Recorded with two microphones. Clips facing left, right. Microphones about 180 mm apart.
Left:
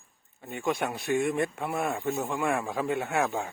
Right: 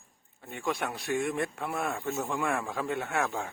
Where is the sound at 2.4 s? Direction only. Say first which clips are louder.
Left 3 dB; 15° left (ahead or behind).